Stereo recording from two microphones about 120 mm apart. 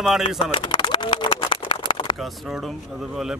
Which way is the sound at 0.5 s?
40° left (ahead or behind).